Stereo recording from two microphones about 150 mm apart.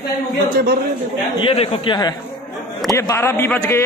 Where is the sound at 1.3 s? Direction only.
40° left (ahead or behind).